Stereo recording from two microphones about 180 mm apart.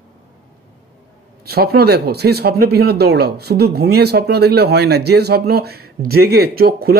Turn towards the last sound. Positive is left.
turn(degrees=-60)  # may be behind; listen again after turning